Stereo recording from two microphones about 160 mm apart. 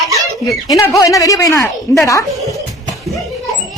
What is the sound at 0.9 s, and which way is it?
A woman's voice, 20° left (ahead or behind).